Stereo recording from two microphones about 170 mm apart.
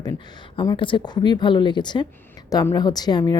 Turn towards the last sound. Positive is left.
turn(degrees=25)  # may be behind; listen again after turning